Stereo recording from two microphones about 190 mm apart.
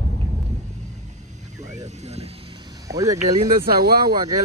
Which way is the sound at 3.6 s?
55° right (ahead or behind).